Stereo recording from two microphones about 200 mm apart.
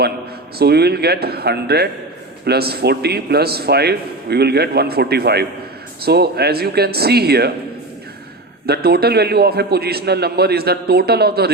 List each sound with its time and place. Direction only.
0.6 s a man's voice: 55° right (ahead or behind)
8.6 s a man's voice: 50° right (ahead or behind)